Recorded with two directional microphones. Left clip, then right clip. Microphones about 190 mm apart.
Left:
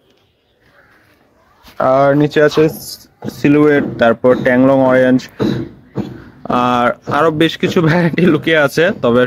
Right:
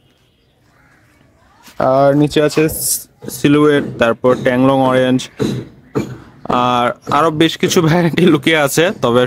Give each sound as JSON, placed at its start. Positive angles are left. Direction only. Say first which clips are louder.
{"t": 1.8, "sound": "speech", "louder": "even", "side_deg": -15}
{"t": 6.4, "sound": "speech", "louder": "left 1 dB", "side_deg": -10}